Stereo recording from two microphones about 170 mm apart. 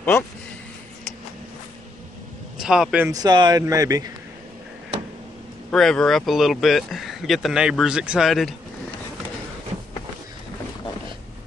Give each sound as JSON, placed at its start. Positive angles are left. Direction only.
{"t": 2.6, "sound": "speech", "side_deg": -5}
{"t": 3.1, "sound": "speech", "side_deg": -20}
{"t": 5.7, "sound": "speech", "side_deg": 5}